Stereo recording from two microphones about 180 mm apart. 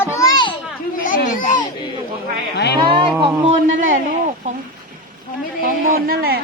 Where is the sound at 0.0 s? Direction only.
15° left (ahead or behind).